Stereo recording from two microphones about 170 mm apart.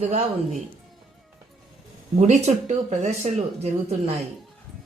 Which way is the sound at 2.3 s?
40° right (ahead or behind).